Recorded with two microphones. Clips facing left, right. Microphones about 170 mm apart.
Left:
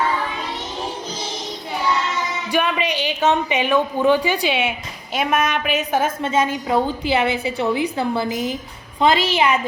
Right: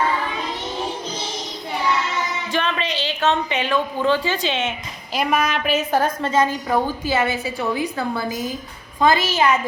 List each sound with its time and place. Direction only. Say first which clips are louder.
2.5 s a woman's voice: left 4 dB; 15° left (ahead or behind)
6.2 s a woman's voice: even; 20° left (ahead or behind)